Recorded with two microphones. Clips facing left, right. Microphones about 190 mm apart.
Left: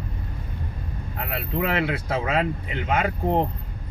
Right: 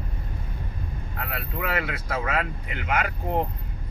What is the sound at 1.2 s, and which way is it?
Speech, 25° left (ahead or behind).